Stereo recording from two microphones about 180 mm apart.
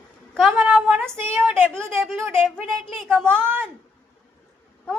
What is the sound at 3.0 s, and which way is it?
Speech, 5° left (ahead or behind).